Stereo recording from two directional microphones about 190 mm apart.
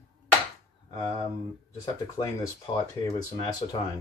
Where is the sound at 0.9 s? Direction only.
20° left (ahead or behind).